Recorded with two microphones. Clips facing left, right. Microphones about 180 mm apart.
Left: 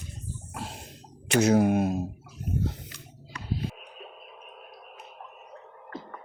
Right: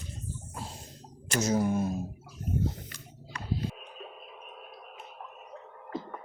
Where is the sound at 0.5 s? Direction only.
70° left (ahead or behind).